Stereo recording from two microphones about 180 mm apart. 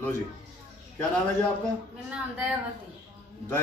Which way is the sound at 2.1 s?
5° right (ahead or behind).